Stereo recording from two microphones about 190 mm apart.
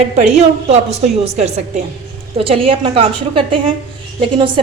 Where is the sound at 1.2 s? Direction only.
35° right (ahead or behind).